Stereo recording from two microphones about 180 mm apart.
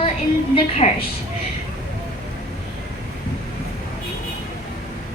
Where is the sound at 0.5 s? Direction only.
30° left (ahead or behind).